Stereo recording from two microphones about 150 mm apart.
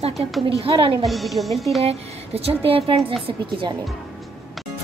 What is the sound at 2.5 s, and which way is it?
Speech, 40° right (ahead or behind).